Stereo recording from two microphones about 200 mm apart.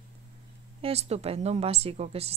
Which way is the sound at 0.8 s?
30° right (ahead or behind).